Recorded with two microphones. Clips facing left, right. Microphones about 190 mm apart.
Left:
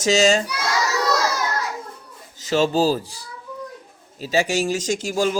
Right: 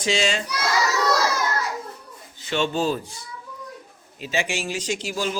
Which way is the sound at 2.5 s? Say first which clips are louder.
Left 5 dB; 35° left (ahead or behind).